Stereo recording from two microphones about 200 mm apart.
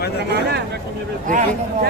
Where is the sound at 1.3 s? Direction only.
40° right (ahead or behind).